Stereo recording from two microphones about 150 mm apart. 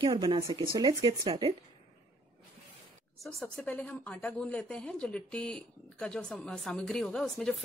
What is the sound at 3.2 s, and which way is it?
Speech, centre (ahead or behind).